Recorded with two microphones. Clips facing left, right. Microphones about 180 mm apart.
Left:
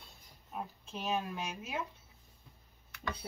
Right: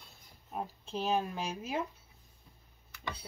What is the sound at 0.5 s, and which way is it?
Speech, 30° right (ahead or behind).